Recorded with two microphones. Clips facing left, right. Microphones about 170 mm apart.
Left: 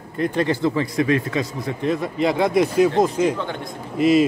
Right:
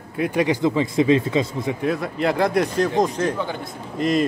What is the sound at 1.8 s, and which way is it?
A man's voice, centre (ahead or behind).